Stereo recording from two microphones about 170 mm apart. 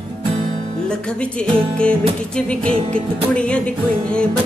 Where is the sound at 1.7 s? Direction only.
5° left (ahead or behind).